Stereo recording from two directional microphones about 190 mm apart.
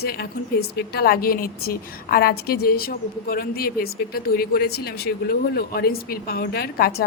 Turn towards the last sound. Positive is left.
turn(degrees=55)  # may be behind; listen again after turning